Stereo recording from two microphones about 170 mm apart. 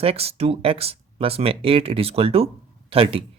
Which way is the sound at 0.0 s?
35° right (ahead or behind).